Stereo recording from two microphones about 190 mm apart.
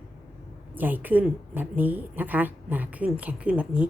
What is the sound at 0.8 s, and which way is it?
A woman's voice, 10° right (ahead or behind).